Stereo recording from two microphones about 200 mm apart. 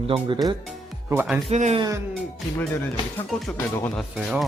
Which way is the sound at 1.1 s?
10° right (ahead or behind).